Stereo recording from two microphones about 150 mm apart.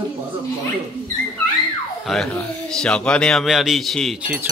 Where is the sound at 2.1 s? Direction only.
Centre (ahead or behind).